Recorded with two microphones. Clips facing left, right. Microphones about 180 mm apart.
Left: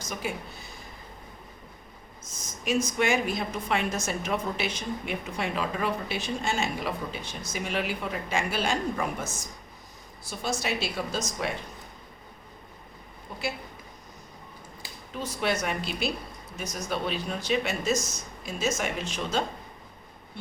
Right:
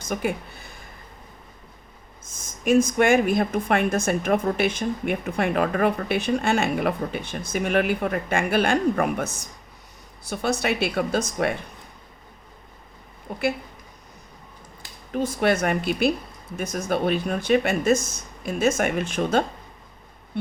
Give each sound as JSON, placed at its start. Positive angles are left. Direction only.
{"t": 0.0, "sound": "a woman's voice", "side_deg": -55}
{"t": 2.2, "sound": "a woman's voice", "side_deg": -50}
{"t": 13.3, "sound": "a woman's voice", "side_deg": -55}
{"t": 15.1, "sound": "a woman's voice", "side_deg": -50}